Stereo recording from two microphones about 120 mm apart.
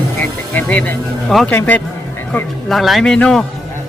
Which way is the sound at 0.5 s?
15° left (ahead or behind).